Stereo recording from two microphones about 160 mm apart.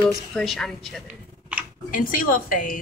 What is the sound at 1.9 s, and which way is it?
Speech, 60° left (ahead or behind).